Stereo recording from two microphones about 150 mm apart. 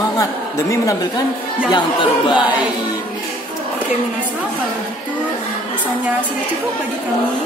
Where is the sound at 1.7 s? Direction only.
30° left (ahead or behind).